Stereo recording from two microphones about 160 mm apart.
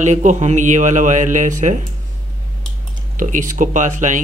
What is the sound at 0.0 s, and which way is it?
Speech, 50° right (ahead or behind).